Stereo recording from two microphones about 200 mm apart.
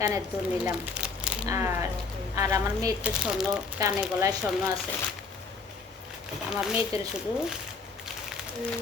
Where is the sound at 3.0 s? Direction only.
5° right (ahead or behind).